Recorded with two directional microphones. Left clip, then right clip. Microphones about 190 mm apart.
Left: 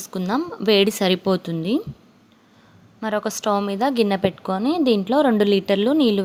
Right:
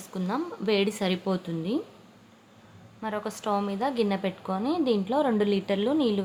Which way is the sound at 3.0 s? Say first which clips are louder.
Left 8 dB; 35° left (ahead or behind).